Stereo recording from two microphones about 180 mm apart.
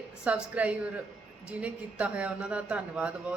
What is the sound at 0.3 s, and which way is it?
A man's voice, 10° right (ahead or behind).